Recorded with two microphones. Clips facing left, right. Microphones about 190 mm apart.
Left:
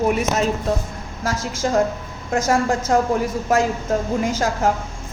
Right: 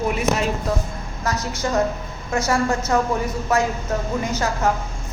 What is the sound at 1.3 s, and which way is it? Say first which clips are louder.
Speech: left 3 dB; 90° left.